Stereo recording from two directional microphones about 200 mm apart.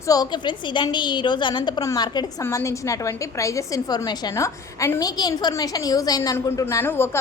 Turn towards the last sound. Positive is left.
turn(degrees=10)  # may be behind; listen again after turning